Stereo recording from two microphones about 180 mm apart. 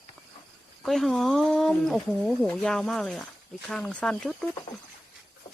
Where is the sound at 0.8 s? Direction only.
Centre (ahead or behind).